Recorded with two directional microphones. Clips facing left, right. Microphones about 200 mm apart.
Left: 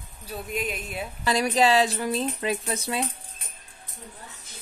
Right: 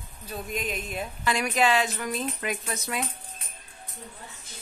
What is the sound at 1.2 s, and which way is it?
Speech, 35° left (ahead or behind).